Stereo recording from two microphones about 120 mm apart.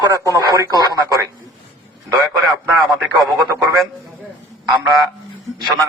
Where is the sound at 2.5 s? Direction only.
Centre (ahead or behind).